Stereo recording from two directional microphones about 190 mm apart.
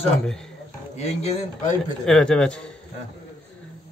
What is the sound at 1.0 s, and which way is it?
Speech, 35° left (ahead or behind).